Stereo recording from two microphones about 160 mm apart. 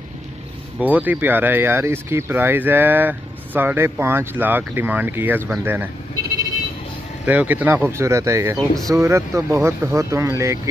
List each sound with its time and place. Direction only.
0.7 s speech: 10° right (ahead or behind)
7.2 s speech: 10° right (ahead or behind)
8.5 s speech: centre (ahead or behind)
8.9 s speech: 20° right (ahead or behind)